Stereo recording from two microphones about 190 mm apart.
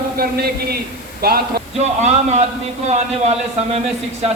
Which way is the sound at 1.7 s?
35° right (ahead or behind).